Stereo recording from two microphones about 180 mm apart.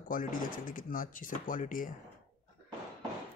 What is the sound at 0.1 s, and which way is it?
Speech, 50° left (ahead or behind).